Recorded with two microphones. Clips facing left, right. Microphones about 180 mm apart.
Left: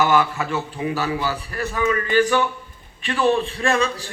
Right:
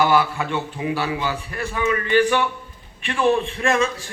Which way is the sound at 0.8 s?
40° left (ahead or behind).